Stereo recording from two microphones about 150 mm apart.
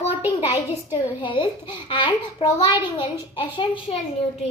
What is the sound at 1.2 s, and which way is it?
A child's voice, 35° left (ahead or behind).